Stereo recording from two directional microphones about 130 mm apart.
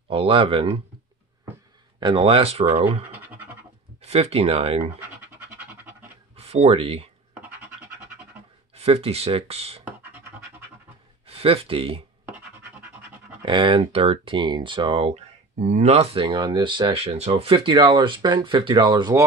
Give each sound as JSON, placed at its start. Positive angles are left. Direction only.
{"t": 0.1, "sound": "speech", "side_deg": -45}
{"t": 2.0, "sound": "speech", "side_deg": -40}
{"t": 3.1, "sound": "scratch", "side_deg": -15}
{"t": 4.0, "sound": "speech", "side_deg": -55}
{"t": 5.3, "sound": "music", "side_deg": -15}
{"t": 6.3, "sound": "speech", "side_deg": -55}
{"t": 7.3, "sound": "scratch", "side_deg": -15}
{"t": 8.7, "sound": "speech", "side_deg": -50}
{"t": 11.2, "sound": "speech", "side_deg": -50}
{"t": 13.5, "sound": "speech", "side_deg": -40}